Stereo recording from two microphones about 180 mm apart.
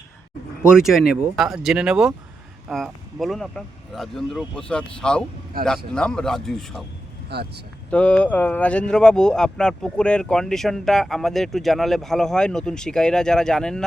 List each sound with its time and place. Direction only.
0.6 s speech: 5° right (ahead or behind)
7.3 s speech: 65° right (ahead or behind)
7.9 s speech: 5° left (ahead or behind)